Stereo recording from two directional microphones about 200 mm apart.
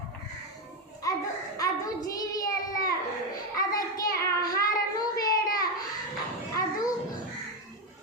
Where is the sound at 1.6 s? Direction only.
15° left (ahead or behind).